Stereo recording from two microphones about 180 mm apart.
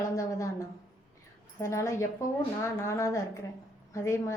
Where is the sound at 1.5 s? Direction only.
15° left (ahead or behind).